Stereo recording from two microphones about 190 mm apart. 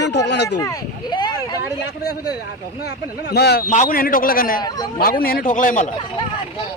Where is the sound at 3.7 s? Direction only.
45° left (ahead or behind).